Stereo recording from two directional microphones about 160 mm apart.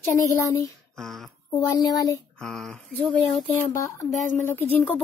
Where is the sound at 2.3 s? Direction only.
5° left (ahead or behind).